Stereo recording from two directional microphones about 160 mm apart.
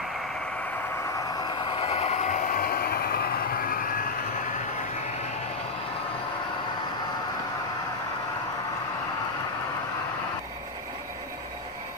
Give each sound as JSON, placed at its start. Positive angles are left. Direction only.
{"t": 1.7, "sound": "vehicle", "side_deg": 40}